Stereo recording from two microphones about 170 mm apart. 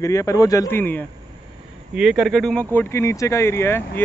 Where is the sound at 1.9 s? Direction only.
Centre (ahead or behind).